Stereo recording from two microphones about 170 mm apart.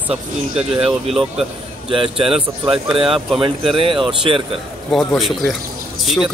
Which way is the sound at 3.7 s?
30° right (ahead or behind).